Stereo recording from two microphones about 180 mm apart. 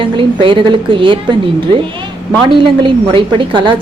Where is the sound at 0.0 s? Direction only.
30° right (ahead or behind).